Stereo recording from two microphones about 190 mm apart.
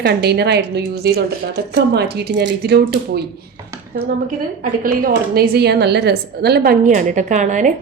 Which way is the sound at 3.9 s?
45° right (ahead or behind).